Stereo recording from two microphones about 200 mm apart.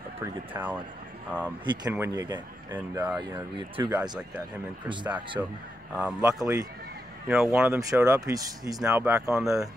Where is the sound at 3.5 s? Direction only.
25° right (ahead or behind).